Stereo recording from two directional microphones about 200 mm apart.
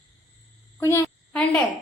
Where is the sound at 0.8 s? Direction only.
15° left (ahead or behind).